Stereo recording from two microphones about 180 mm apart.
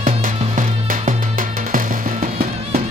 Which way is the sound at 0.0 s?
50° right (ahead or behind).